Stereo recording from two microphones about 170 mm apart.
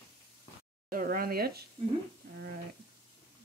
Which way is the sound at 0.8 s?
55° right (ahead or behind).